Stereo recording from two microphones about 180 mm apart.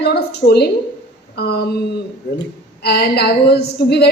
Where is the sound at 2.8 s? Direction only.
65° left (ahead or behind).